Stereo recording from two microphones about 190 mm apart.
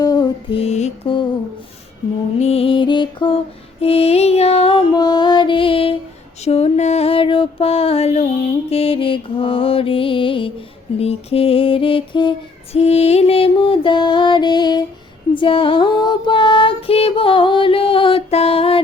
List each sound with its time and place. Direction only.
0.0 s mantra: 20° left (ahead or behind)
2.4 s music: 30° left (ahead or behind)
6.4 s a sound: 35° left (ahead or behind)
8.7 s music: 30° left (ahead or behind)
10.9 s mantra: 30° left (ahead or behind)
12.7 s music: 35° left (ahead or behind)
15.3 s female singing: 25° left (ahead or behind)